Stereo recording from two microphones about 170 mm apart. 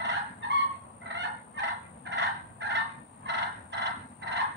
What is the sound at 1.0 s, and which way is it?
Fowl, 90° right.